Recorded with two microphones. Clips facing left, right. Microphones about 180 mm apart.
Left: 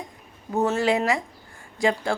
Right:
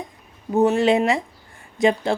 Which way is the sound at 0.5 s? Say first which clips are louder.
Right 5 dB; 20° right (ahead or behind).